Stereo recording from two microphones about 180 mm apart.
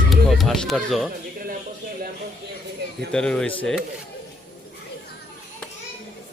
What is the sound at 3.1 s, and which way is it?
Speech, 5° left (ahead or behind).